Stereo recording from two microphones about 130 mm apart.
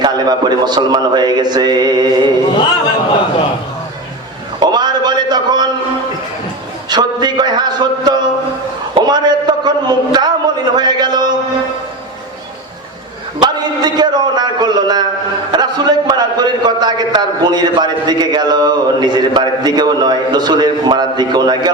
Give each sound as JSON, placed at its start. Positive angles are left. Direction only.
{"t": 0.0, "sound": "a man's voice", "side_deg": -35}
{"t": 4.6, "sound": "a sound", "side_deg": -35}
{"t": 6.9, "sound": "a man's voice", "side_deg": -35}
{"t": 9.0, "sound": "a sound", "side_deg": -35}
{"t": 10.8, "sound": "speech", "side_deg": -35}
{"t": 13.4, "sound": "a man's voice", "side_deg": -35}